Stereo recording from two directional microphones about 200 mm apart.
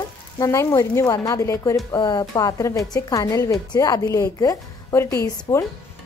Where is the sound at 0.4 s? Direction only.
15° left (ahead or behind).